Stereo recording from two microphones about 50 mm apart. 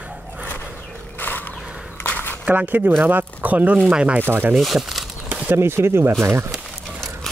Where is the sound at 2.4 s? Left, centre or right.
Right.